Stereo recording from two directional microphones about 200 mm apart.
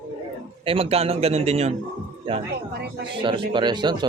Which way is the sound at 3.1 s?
25° right (ahead or behind).